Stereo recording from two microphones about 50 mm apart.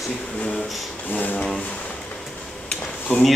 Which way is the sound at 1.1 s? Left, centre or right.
Left.